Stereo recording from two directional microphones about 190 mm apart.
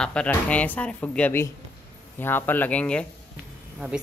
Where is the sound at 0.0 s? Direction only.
5° left (ahead or behind).